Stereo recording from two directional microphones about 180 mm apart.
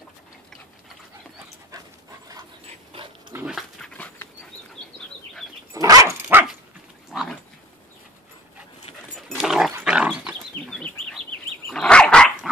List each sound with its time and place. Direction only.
2.9 s dog: 30° right (ahead or behind)
3.3 s dog: centre (ahead or behind)
5.7 s dog: 20° right (ahead or behind); by 7.3 s centre (ahead or behind)
9.3 s dog: centre (ahead or behind)